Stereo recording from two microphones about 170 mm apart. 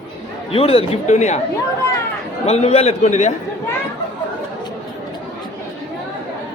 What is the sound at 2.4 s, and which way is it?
Speech, 40° left (ahead or behind).